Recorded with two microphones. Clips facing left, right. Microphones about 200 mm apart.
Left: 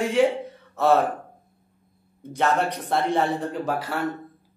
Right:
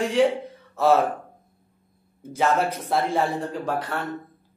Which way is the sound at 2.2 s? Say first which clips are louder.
Right 1 dB; 5° right (ahead or behind).